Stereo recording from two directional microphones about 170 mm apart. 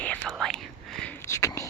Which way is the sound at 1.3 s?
20° left (ahead or behind).